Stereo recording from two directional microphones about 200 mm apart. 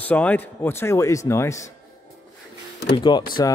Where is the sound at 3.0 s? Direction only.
25° left (ahead or behind).